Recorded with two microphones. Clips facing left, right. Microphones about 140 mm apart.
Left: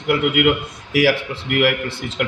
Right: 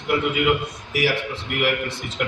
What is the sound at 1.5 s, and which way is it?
Speech, 90° left.